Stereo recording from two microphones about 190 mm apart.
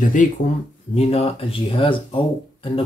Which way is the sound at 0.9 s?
30° left (ahead or behind).